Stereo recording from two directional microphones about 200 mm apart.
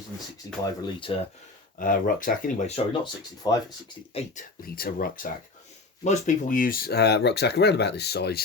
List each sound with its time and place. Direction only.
0.6 s speech: 20° left (ahead or behind)
1.8 s speech: 45° left (ahead or behind)
3.4 s speech: 20° left (ahead or behind)
4.6 s speech: 50° left (ahead or behind)